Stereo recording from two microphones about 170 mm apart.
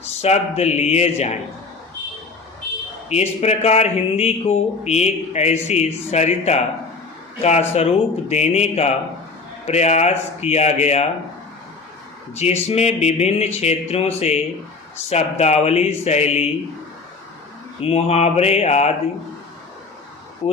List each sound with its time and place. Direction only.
0.1 s speech: 40° left (ahead or behind)
3.1 s speech: 40° left (ahead or behind)
7.7 s speech: 40° left (ahead or behind)
12.3 s speech: 40° left (ahead or behind)
17.7 s speech: 35° left (ahead or behind)
20.4 s speech: 35° left (ahead or behind)